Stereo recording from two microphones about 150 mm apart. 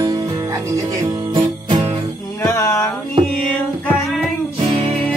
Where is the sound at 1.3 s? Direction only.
30° right (ahead or behind).